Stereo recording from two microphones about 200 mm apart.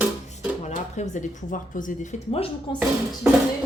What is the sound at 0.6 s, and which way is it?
Speech, 35° left (ahead or behind).